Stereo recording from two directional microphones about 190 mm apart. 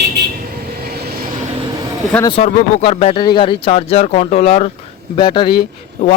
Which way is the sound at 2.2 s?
30° left (ahead or behind).